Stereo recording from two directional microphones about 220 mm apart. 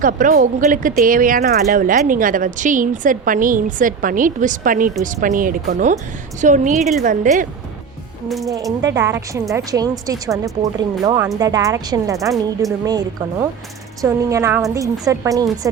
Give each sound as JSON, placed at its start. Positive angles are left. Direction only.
{"t": 0.0, "sound": "speech", "side_deg": -35}
{"t": 8.3, "sound": "ratchet", "side_deg": 0}
{"t": 8.5, "sound": "speech", "side_deg": -15}